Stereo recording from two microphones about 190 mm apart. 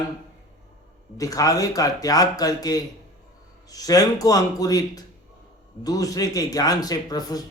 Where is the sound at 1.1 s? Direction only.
20° left (ahead or behind).